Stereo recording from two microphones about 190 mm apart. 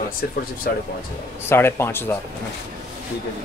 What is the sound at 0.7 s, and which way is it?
Speech, 55° left (ahead or behind).